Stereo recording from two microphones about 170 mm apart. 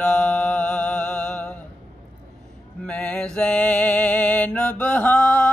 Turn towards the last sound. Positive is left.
turn(degrees=5)  # may be behind; listen again after turning